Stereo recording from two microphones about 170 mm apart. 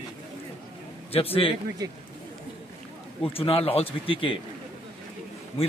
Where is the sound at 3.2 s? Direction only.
35° left (ahead or behind).